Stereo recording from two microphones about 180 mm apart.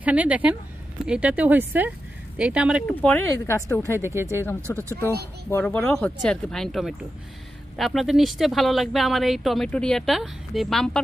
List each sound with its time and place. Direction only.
0.0 s speech: 10° right (ahead or behind)
2.9 s speech: 10° left (ahead or behind)
4.0 s speech: 15° right (ahead or behind)
4.7 s speech: 15° left (ahead or behind)